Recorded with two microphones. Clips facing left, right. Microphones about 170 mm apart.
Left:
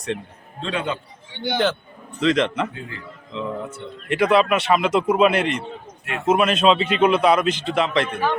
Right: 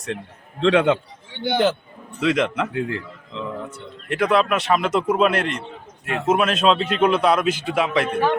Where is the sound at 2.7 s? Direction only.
70° right (ahead or behind).